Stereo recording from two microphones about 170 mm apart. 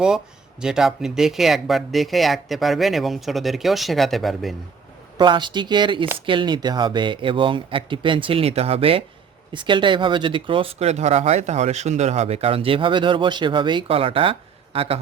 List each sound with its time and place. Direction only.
0.6 s speech: 5° right (ahead or behind)
5.1 s speech: 25° right (ahead or behind)